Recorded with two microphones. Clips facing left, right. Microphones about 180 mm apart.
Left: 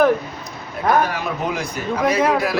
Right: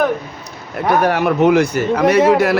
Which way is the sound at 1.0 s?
65° right (ahead or behind).